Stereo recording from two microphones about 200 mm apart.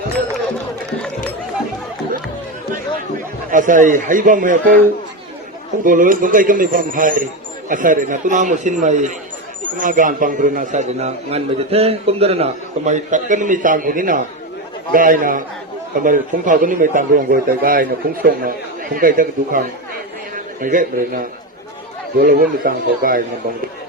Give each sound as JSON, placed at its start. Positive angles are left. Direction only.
{"t": 3.5, "sound": "a man's voice", "side_deg": -40}
{"t": 5.8, "sound": "a man's voice", "side_deg": -40}
{"t": 22.2, "sound": "a man's voice", "side_deg": -45}